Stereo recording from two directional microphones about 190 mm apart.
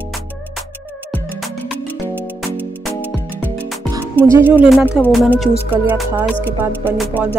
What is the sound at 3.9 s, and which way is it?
Speech, 15° right (ahead or behind).